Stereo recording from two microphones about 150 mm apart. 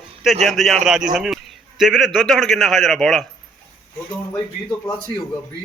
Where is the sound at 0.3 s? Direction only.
Centre (ahead or behind).